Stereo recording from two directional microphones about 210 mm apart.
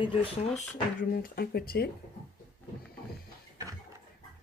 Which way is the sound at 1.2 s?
45° left (ahead or behind).